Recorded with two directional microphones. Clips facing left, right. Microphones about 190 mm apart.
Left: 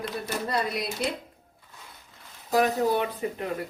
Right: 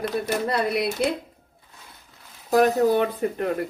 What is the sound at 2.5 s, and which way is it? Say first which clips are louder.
Speech: right 5 dB; 50° right (ahead or behind).